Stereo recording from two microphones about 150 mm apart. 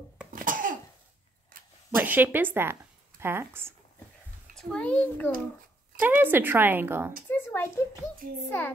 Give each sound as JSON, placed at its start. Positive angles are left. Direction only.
{"t": 0.3, "sound": "cough", "side_deg": -65}
{"t": 2.0, "sound": "speech", "side_deg": -10}
{"t": 4.6, "sound": "a child's voice", "side_deg": 5}
{"t": 5.9, "sound": "a woman's voice", "side_deg": -10}
{"t": 7.2, "sound": "a child's voice", "side_deg": 15}